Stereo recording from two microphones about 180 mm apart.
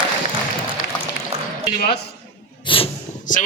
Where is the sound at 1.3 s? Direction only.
35° right (ahead or behind).